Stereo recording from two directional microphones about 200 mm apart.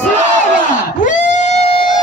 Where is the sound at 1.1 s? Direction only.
35° left (ahead or behind).